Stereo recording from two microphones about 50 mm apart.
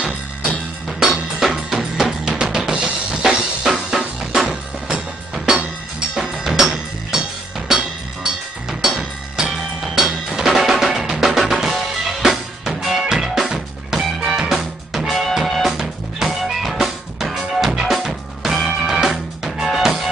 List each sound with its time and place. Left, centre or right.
0.8 s drum kit: centre
2.3 s drum kit: centre
5.3 s music: centre